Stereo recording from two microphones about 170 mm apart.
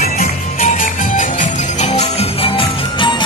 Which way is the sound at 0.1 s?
45° left (ahead or behind).